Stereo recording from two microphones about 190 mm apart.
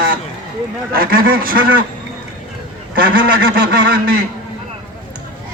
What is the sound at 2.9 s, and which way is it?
A man's voice, 50° right (ahead or behind).